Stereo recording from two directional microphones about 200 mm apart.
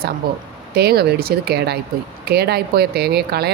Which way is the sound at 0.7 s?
55° right (ahead or behind).